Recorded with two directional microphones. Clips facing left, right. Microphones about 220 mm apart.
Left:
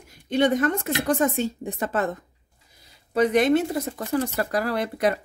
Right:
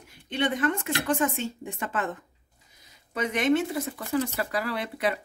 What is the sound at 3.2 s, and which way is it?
A woman's voice, 35° left (ahead or behind).